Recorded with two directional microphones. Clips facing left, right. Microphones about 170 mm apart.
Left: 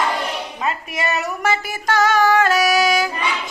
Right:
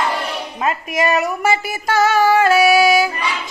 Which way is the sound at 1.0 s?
10° right (ahead or behind).